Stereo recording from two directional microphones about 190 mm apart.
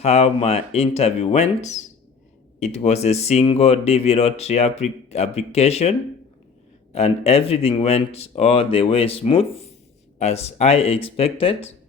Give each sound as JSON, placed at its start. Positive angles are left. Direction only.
{"t": 0.0, "sound": "speech", "side_deg": 35}
{"t": 6.9, "sound": "speech", "side_deg": 35}